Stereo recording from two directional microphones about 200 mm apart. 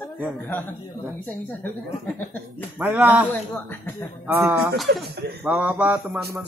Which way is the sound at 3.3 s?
10° left (ahead or behind).